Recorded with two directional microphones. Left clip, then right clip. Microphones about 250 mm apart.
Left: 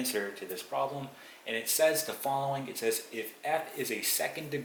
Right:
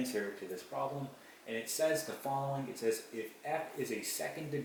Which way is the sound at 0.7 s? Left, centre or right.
Centre.